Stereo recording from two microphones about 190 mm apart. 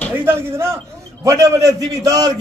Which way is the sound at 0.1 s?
10° right (ahead or behind).